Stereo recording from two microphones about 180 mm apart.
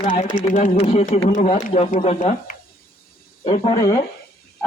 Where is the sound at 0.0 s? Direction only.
45° left (ahead or behind).